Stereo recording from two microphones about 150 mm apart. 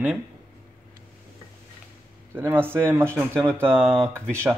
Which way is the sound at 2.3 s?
15° right (ahead or behind).